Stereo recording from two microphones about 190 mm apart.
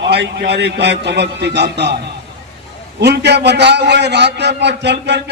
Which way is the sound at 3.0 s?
60° right (ahead or behind).